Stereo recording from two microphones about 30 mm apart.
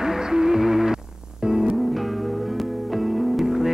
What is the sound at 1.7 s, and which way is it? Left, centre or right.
Music, centre.